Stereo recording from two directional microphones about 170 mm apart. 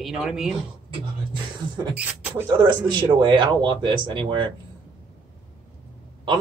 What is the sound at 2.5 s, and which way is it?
Speech, 25° right (ahead or behind).